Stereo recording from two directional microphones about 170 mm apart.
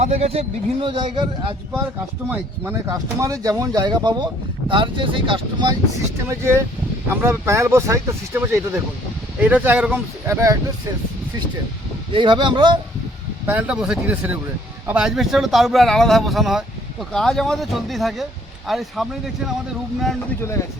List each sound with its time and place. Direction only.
0.0 s a man's voice: 40° right (ahead or behind)
2.3 s speech: 10° right (ahead or behind); by 5.7 s 30° right (ahead or behind)
6.2 s speech: 15° right (ahead or behind)
12.1 s speech: 30° right (ahead or behind)
13.5 s a man's voice: 5° right (ahead or behind)
20.4 s speech: 15° left (ahead or behind)